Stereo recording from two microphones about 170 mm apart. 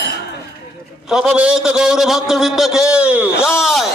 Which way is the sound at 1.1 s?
5° right (ahead or behind).